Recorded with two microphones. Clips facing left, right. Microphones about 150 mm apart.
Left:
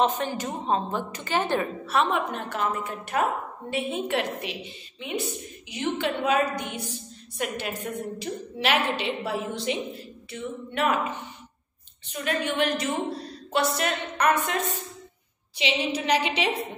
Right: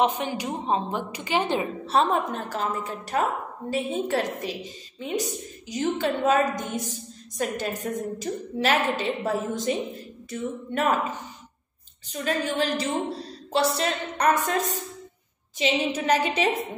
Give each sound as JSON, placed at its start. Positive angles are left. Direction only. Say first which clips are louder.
{"t": 0.0, "sound": "a woman's voice", "louder": "right 1 dB", "side_deg": -15}
{"t": 1.9, "sound": "a woman's voice", "louder": "right 3 dB", "side_deg": -35}